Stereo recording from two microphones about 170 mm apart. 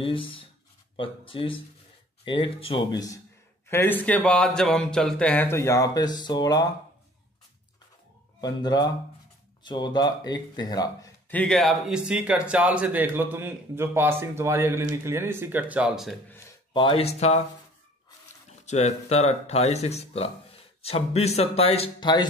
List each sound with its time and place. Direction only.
0.0 s speech: 30° left (ahead or behind)
8.4 s speech: 25° left (ahead or behind)
11.2 s speech: 5° left (ahead or behind)
16.7 s speech: 30° left (ahead or behind)
18.7 s speech: 40° left (ahead or behind)